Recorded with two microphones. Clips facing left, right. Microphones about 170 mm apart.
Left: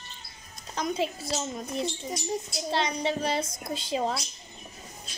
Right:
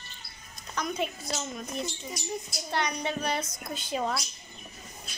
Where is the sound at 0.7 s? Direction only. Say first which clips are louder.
Left 3 dB; 30° left (ahead or behind).